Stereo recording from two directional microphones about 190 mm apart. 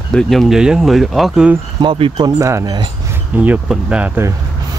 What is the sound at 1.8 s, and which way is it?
Speech, 25° right (ahead or behind).